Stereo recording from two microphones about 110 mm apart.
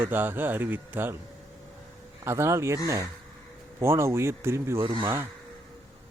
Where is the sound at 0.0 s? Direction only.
20° right (ahead or behind).